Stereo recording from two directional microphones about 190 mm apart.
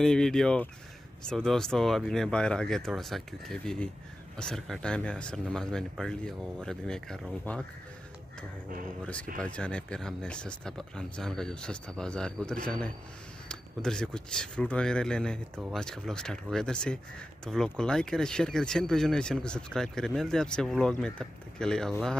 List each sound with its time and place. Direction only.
0.0 s speech: 5° left (ahead or behind)
9.0 s speech: 5° left (ahead or behind)